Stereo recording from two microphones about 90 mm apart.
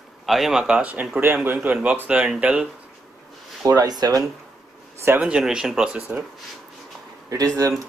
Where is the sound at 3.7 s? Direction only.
45° right (ahead or behind).